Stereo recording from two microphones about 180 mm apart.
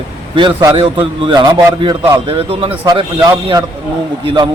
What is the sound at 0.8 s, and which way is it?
A man's voice, 30° right (ahead or behind).